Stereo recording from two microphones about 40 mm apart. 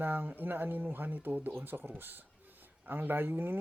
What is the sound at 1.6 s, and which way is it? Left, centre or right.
Speech, right.